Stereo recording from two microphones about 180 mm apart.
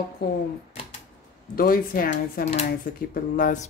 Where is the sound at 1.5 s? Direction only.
55° left (ahead or behind).